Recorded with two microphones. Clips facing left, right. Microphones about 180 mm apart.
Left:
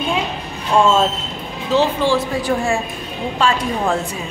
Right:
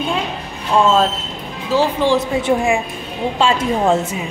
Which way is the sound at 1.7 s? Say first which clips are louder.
Right 1 dB; 15° right (ahead or behind).